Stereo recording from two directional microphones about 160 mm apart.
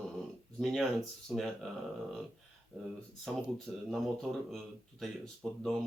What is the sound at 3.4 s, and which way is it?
Speech, centre (ahead or behind).